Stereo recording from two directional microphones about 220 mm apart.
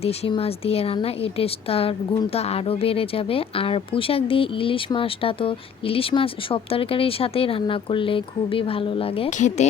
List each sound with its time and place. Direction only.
0.0 s a woman's voice: 30° left (ahead or behind)